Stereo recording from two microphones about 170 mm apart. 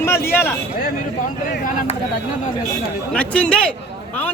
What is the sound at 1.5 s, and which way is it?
Speech, 50° left (ahead or behind).